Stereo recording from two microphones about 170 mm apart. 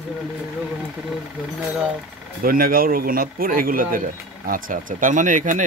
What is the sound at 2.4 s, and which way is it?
Speech, 55° right (ahead or behind).